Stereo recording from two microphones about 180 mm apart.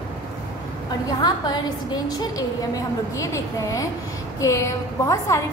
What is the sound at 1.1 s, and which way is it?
A woman's voice, 25° left (ahead or behind).